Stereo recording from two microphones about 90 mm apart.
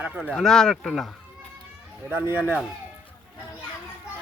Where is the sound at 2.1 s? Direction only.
20° right (ahead or behind).